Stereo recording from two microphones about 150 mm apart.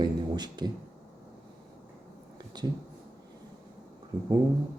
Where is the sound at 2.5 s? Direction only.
30° right (ahead or behind).